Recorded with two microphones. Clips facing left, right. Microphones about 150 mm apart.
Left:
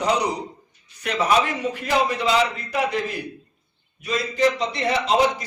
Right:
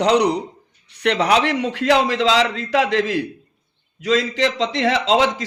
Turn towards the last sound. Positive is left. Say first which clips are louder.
# right 2 dB
turn(degrees=-90)